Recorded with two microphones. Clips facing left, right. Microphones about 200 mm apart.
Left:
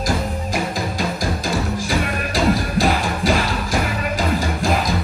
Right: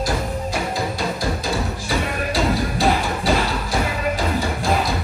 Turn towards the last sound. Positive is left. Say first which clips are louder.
# even
turn(degrees=90)